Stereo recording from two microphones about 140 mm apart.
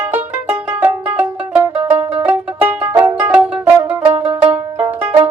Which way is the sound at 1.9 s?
40° right (ahead or behind).